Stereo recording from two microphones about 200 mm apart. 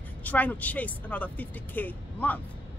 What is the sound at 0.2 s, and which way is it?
A man's voice, 10° left (ahead or behind).